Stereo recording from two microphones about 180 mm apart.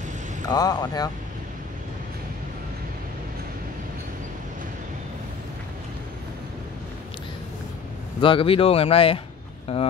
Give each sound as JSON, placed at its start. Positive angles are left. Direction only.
{"t": 0.5, "sound": "speech", "side_deg": 20}
{"t": 8.2, "sound": "speech", "side_deg": 30}